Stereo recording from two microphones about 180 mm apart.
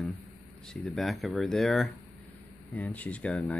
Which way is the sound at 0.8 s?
Centre (ahead or behind).